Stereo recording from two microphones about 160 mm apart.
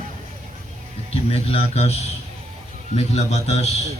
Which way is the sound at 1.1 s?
40° left (ahead or behind).